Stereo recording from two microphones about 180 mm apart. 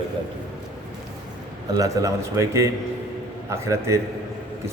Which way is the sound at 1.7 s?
20° right (ahead or behind).